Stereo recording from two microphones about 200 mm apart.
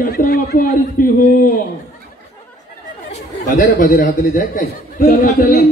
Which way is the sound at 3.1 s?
40° left (ahead or behind).